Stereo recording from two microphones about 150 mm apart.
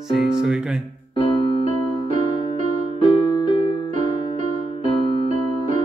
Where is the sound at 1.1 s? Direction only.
35° left (ahead or behind).